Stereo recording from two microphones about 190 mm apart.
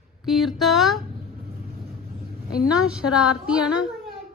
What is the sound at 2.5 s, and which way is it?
A woman's voice, 5° right (ahead or behind).